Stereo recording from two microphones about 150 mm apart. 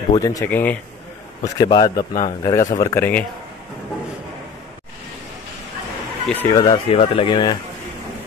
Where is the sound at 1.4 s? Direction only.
25° left (ahead or behind).